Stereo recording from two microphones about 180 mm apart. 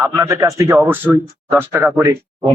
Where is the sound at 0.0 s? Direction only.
15° right (ahead or behind).